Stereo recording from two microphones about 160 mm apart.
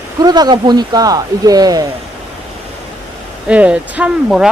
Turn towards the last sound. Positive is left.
turn(degrees=-5)  # may be behind; listen again after turning